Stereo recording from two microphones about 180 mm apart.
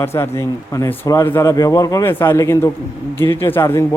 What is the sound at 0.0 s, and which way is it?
Speech, 15° left (ahead or behind).